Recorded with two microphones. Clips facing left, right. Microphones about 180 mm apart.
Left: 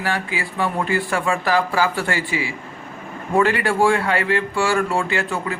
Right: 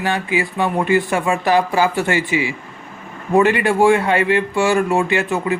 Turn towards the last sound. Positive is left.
turn(degrees=-20)  # may be behind; listen again after turning